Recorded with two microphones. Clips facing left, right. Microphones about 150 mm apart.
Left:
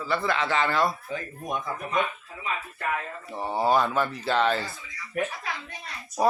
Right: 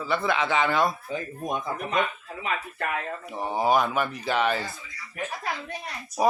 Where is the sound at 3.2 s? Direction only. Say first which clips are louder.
Even; 15° right (ahead or behind).